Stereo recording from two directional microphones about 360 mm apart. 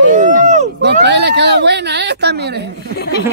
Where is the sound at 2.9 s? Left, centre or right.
Left.